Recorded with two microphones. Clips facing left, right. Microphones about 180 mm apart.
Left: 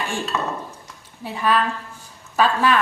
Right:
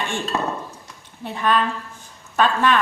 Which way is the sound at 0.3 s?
30° right (ahead or behind).